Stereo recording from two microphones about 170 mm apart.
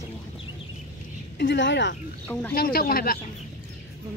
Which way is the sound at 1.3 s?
90° left.